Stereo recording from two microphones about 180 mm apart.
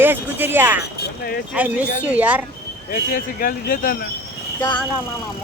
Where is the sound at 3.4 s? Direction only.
55° left (ahead or behind).